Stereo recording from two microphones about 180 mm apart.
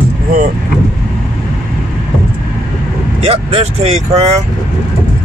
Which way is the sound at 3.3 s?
35° right (ahead or behind).